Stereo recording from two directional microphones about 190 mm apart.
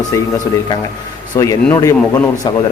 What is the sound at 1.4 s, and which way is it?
Speech, 20° left (ahead or behind).